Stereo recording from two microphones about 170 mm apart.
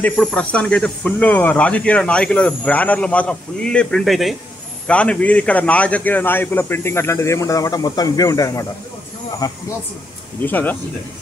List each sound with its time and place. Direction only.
0.0 s speech: 5° left (ahead or behind); by 9.6 s 25° left (ahead or behind)
10.4 s speech: 10° left (ahead or behind)